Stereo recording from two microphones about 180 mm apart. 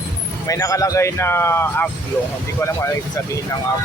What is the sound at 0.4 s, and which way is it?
Speech, 20° left (ahead or behind).